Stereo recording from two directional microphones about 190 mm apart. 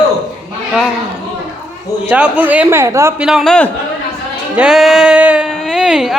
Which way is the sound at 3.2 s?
Centre (ahead or behind).